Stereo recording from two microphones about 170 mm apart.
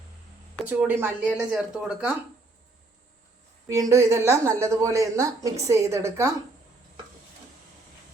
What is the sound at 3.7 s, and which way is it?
A woman's voice, 20° right (ahead or behind).